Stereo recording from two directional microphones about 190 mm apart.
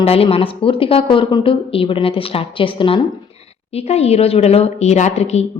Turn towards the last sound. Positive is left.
turn(degrees=35)  # may be behind; listen again after turning